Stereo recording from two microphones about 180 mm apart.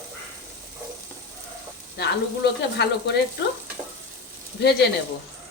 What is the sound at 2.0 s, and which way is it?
A woman's voice, 70° left (ahead or behind).